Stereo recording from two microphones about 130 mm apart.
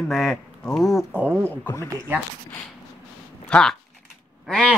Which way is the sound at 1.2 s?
15° right (ahead or behind).